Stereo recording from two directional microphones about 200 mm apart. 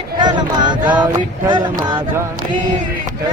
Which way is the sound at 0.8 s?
5° right (ahead or behind).